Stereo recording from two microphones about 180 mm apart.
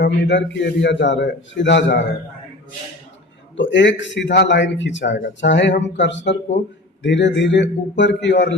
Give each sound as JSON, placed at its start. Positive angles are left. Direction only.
{"t": 0.0, "sound": "a man's voice", "side_deg": 75}
{"t": 3.6, "sound": "a man's voice", "side_deg": 85}
{"t": 7.0, "sound": "speech", "side_deg": 80}